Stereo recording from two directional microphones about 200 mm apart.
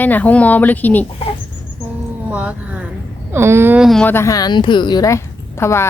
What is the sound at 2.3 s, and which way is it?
A woman's voice, 5° right (ahead or behind).